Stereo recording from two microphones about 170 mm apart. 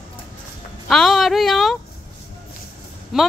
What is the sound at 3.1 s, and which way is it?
Speech, 5° right (ahead or behind).